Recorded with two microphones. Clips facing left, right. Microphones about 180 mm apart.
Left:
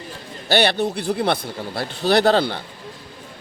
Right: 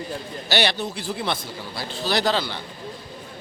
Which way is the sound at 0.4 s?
55° left (ahead or behind).